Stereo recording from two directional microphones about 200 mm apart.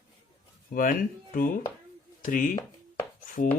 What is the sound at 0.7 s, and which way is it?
Speech, 45° left (ahead or behind).